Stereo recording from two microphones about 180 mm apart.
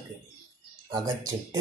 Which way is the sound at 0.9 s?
20° right (ahead or behind).